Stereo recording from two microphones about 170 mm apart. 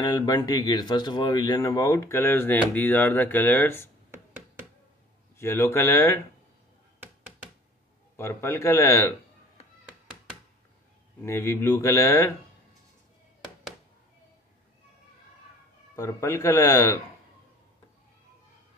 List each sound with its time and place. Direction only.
0.0 s speech: 25° left (ahead or behind)
5.4 s speech: 15° left (ahead or behind)
8.2 s speech: 15° left (ahead or behind)
11.2 s speech: 15° left (ahead or behind)
16.0 s speech: 15° left (ahead or behind)